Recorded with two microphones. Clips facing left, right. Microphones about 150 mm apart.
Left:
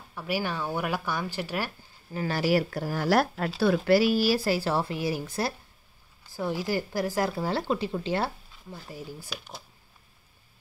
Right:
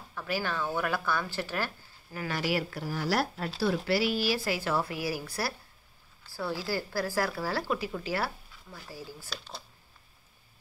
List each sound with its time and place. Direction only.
0.1 s speech: 15° left (ahead or behind)
2.1 s a woman's voice: 35° left (ahead or behind); by 9.6 s 15° left (ahead or behind)